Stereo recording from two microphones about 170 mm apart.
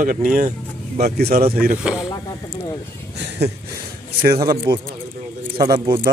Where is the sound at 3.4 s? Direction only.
75° right (ahead or behind).